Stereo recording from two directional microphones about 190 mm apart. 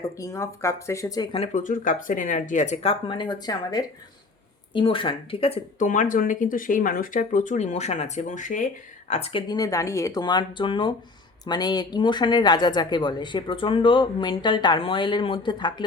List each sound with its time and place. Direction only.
0.2 s speech: 15° left (ahead or behind)
1.5 s speech: 45° left (ahead or behind); by 15.8 s 25° left (ahead or behind)